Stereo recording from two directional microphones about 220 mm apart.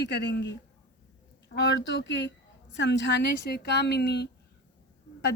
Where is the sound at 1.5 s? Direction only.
55° left (ahead or behind).